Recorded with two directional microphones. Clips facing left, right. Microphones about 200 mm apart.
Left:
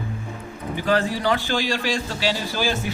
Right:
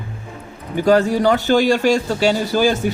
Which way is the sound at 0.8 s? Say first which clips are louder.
Right 8 dB; 45° right (ahead or behind).